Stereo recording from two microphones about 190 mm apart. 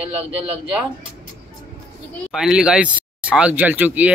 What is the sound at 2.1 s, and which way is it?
Speech, centre (ahead or behind).